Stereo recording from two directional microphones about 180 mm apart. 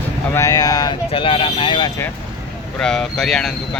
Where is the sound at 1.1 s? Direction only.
30° left (ahead or behind).